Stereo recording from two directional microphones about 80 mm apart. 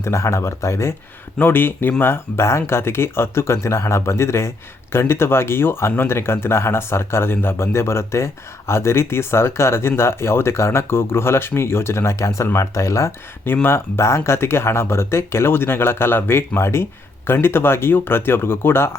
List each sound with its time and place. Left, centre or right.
0.0 s speech: left